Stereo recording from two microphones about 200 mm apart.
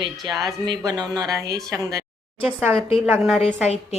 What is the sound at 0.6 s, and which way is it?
A woman's voice, 20° right (ahead or behind).